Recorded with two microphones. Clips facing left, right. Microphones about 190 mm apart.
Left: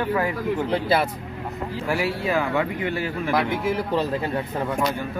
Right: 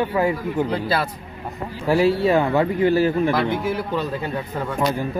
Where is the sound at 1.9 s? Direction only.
30° right (ahead or behind).